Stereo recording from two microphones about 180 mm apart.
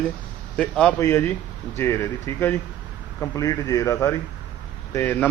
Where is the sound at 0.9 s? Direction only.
15° left (ahead or behind).